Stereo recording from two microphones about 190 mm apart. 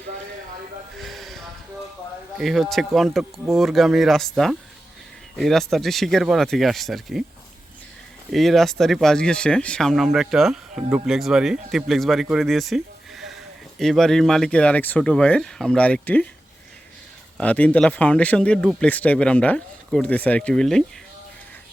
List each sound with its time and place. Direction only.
0.9 s a sound: centre (ahead or behind)
2.4 s speech: centre (ahead or behind)
8.3 s speech: centre (ahead or behind)
17.3 s speech: 5° left (ahead or behind)